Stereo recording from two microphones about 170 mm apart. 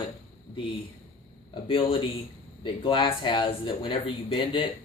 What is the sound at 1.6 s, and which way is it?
Speech, 30° left (ahead or behind).